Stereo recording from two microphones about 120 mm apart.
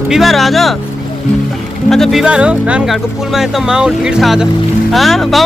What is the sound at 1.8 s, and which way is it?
Speech, 5° left (ahead or behind).